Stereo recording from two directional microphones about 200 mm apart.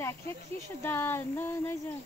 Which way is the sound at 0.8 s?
10° left (ahead or behind).